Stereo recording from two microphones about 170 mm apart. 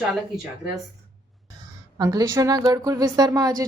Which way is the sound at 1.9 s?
20° right (ahead or behind).